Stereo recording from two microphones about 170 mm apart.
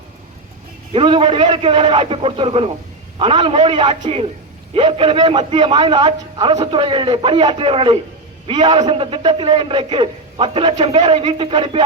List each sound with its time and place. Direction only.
0.9 s a man's voice: 30° right (ahead or behind)